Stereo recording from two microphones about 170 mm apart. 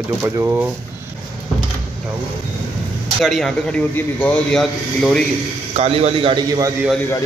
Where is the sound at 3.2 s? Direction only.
Centre (ahead or behind).